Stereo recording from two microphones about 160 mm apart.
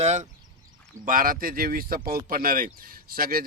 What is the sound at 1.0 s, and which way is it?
A man's voice, 60° right (ahead or behind).